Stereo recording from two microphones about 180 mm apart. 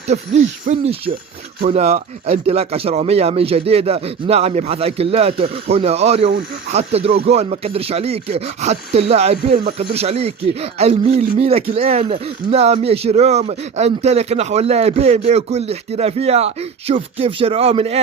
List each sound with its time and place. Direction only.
0.1 s speech: 40° right (ahead or behind)
11.2 s speech: 45° right (ahead or behind)
11.4 s speech: 35° right (ahead or behind)